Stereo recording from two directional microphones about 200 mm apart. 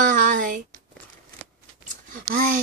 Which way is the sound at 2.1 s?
40° right (ahead or behind).